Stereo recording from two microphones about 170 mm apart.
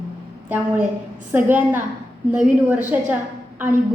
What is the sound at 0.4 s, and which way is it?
A woman's voice, 10° right (ahead or behind).